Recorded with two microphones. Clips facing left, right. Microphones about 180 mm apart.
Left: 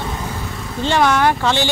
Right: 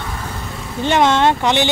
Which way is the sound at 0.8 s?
20° right (ahead or behind).